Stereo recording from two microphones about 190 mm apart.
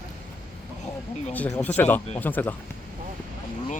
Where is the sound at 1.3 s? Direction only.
5° left (ahead or behind).